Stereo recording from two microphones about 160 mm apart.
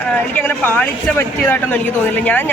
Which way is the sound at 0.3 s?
10° left (ahead or behind).